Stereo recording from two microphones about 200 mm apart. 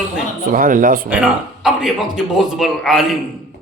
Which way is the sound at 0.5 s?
45° right (ahead or behind).